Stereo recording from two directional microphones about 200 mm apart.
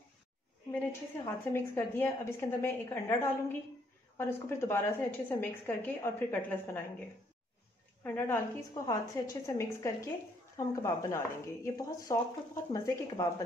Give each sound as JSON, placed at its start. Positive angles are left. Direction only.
{"t": 0.7, "sound": "a woman's voice", "side_deg": 10}
{"t": 8.0, "sound": "a woman's voice", "side_deg": 10}